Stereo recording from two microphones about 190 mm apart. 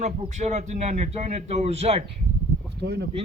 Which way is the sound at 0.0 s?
40° right (ahead or behind).